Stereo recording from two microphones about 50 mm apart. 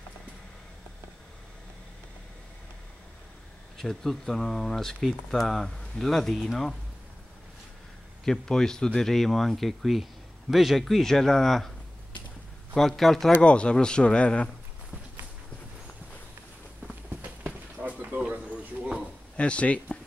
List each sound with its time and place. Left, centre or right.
3.7 s speech: centre
8.3 s speech: centre
12.7 s speech: centre
13.4 s speech: left
17.2 s a sound: right
19.3 s speech: left